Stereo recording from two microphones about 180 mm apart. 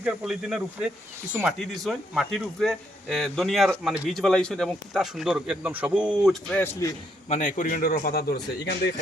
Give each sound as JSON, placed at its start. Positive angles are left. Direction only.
{"t": 0.0, "sound": "a man's voice", "side_deg": -5}
{"t": 6.5, "sound": "a man's voice", "side_deg": 15}
{"t": 7.3, "sound": "a man's voice", "side_deg": 45}